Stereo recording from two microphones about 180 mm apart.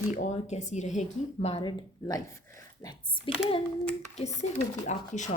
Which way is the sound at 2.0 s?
20° left (ahead or behind).